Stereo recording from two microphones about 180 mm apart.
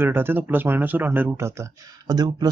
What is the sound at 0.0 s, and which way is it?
Speech, 10° right (ahead or behind).